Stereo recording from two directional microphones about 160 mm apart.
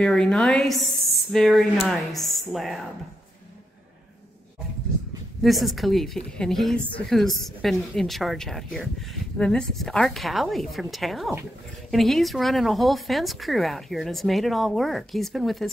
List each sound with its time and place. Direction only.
0.0 s a woman's voice: 5° left (ahead or behind)
5.4 s a woman's voice: centre (ahead or behind)